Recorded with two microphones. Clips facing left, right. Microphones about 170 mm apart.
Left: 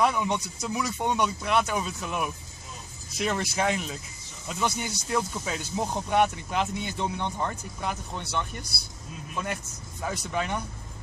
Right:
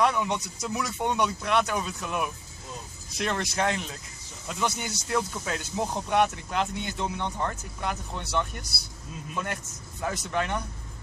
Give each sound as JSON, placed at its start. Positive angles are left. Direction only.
{"t": 0.0, "sound": "speech", "side_deg": 0}